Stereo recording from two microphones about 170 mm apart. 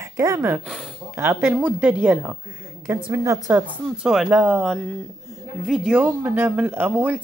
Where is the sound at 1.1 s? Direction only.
10° right (ahead or behind).